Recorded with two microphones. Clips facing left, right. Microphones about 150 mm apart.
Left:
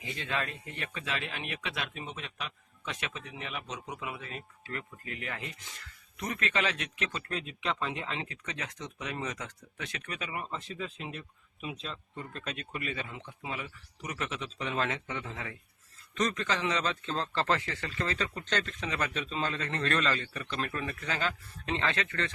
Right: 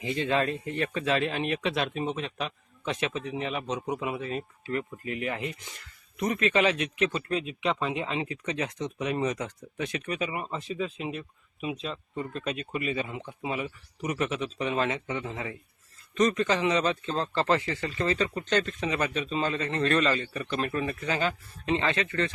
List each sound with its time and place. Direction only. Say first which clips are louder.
0.0 s speech: right 9 dB; 25° right (ahead or behind); by 22.3 s 10° right (ahead or behind)